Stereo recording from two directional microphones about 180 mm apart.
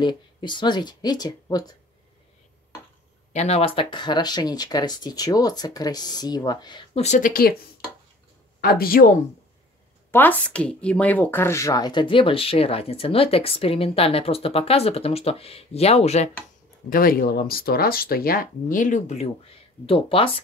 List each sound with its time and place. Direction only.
0.0 s speech: 25° left (ahead or behind)
3.3 s speech: 35° left (ahead or behind); by 7.5 s 55° left (ahead or behind)
8.5 s speech: 55° left (ahead or behind)
10.1 s speech: 10° left (ahead or behind); by 16.3 s 35° left (ahead or behind)
16.9 s speech: 55° left (ahead or behind); by 20.2 s 30° left (ahead or behind)